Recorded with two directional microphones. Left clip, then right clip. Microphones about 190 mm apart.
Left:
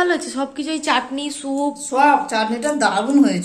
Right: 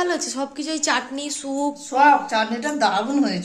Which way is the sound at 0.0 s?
Centre (ahead or behind).